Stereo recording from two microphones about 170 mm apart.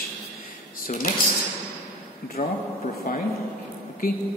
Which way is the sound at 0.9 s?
50° left (ahead or behind).